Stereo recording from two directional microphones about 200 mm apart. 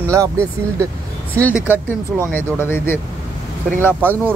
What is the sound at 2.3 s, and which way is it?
Speech, 10° left (ahead or behind).